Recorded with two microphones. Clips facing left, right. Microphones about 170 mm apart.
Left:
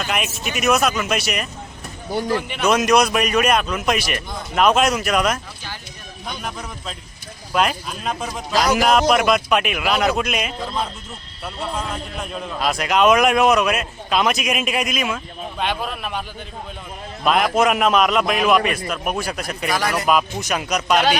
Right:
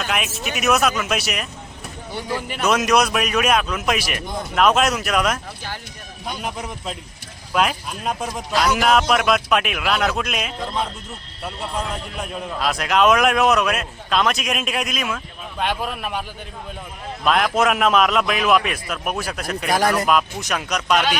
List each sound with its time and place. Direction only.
0.1 s a man's voice: centre (ahead or behind)
7.5 s a man's voice: centre (ahead or behind)
8.5 s speech: 40° left (ahead or behind)
8.8 s a man's voice: centre (ahead or behind)
12.2 s a man's voice: 5° right (ahead or behind)
17.2 s a man's voice: centre (ahead or behind)
19.6 s speech: 50° right (ahead or behind)
20.1 s a man's voice: 5° left (ahead or behind)